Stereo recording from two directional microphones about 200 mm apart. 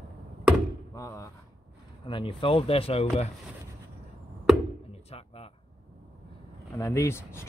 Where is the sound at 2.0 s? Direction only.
25° left (ahead or behind).